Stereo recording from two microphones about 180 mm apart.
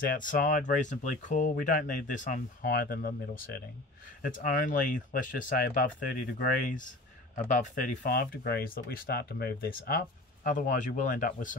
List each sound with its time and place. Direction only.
0.0 s speech: 50° left (ahead or behind)